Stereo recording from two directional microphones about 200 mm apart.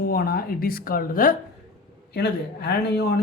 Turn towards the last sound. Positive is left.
turn(degrees=55)  # may be behind; listen again after turning